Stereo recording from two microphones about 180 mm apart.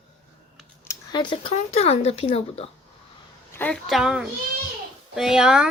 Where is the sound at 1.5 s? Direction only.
35° left (ahead or behind).